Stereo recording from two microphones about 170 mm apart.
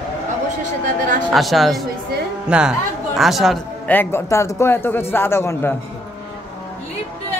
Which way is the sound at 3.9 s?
10° left (ahead or behind).